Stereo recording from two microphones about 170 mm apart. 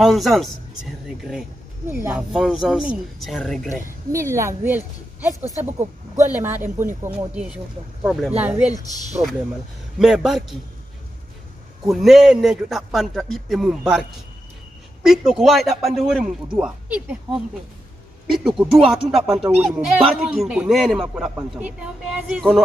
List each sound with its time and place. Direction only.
0.0 s a man's voice: centre (ahead or behind)
4.1 s a woman's voice: 15° right (ahead or behind)
9.9 s a man's voice: centre (ahead or behind)
11.9 s a man's voice: centre (ahead or behind)
15.0 s a man's voice: 5° right (ahead or behind)
18.6 s a man's voice: 5° right (ahead or behind)